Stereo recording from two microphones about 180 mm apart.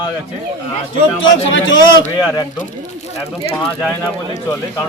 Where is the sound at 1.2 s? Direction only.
90° left.